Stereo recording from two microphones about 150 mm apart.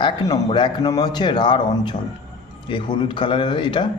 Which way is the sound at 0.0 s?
30° left (ahead or behind).